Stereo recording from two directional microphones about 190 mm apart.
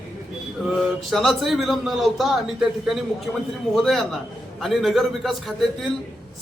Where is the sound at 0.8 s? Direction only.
Centre (ahead or behind).